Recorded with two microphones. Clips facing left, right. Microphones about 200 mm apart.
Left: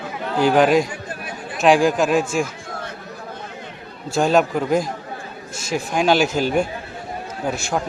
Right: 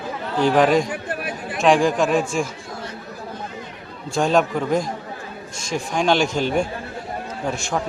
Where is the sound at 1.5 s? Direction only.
Centre (ahead or behind).